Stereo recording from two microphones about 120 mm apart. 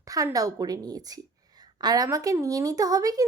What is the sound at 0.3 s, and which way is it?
A woman's voice, 30° right (ahead or behind).